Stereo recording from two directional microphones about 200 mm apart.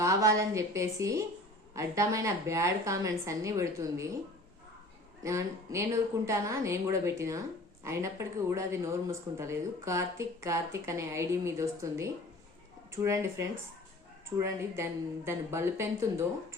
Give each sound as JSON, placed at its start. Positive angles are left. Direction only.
{"t": 0.0, "sound": "a woman's voice", "side_deg": -15}
{"t": 5.2, "sound": "a woman's voice", "side_deg": -15}